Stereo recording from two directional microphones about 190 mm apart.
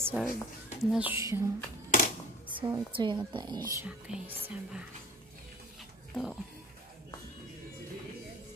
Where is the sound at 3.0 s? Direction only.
25° right (ahead or behind).